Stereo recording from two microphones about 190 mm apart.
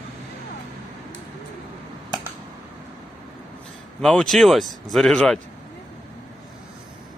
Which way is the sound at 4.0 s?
5° left (ahead or behind).